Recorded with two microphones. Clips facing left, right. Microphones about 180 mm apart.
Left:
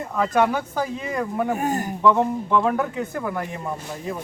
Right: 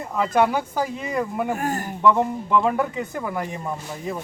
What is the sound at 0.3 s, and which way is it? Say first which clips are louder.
Speech: right 1 dB; 10° right (ahead or behind).